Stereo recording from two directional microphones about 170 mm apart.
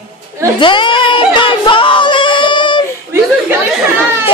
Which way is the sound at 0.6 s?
30° left (ahead or behind).